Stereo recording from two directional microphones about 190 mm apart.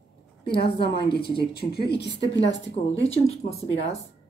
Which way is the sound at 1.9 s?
65° left (ahead or behind).